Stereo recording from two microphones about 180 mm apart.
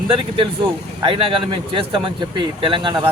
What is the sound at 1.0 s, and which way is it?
Speech, 30° right (ahead or behind).